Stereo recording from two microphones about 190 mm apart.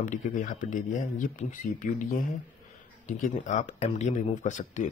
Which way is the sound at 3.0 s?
40° left (ahead or behind).